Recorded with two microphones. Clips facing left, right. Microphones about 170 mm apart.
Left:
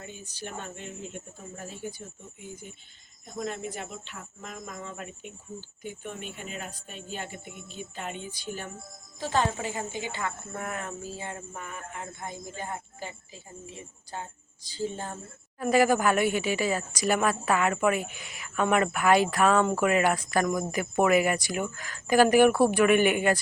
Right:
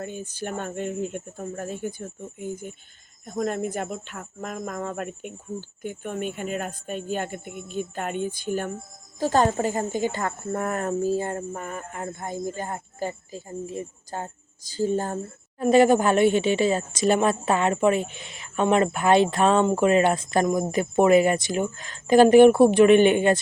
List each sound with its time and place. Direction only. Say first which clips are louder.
0.0 s a woman's voice: right 9 dB; 50° right (ahead or behind)
15.5 s a woman's voice: right 6 dB; 25° right (ahead or behind)